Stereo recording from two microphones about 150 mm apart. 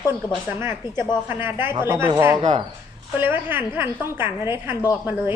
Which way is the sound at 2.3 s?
35° right (ahead or behind).